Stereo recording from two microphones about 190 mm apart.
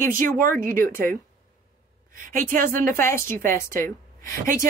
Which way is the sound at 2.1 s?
45° right (ahead or behind).